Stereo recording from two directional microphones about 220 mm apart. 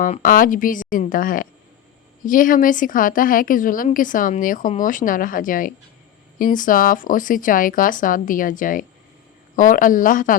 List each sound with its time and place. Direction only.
0.0 s speech: 40° left (ahead or behind)